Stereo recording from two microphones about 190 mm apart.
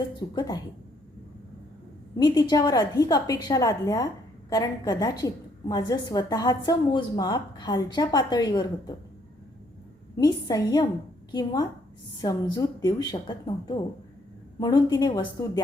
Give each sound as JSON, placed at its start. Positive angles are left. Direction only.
{"t": 0.2, "sound": "a woman's voice", "side_deg": 20}
{"t": 2.1, "sound": "a woman's voice", "side_deg": 20}
{"t": 10.2, "sound": "a woman's voice", "side_deg": 20}